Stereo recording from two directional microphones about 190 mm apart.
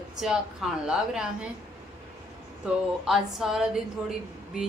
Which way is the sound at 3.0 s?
Centre (ahead or behind).